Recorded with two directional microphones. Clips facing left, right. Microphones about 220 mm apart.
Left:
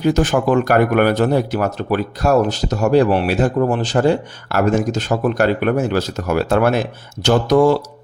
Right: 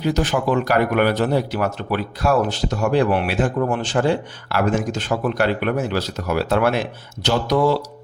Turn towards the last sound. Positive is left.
turn(degrees=50)  # may be behind; listen again after turning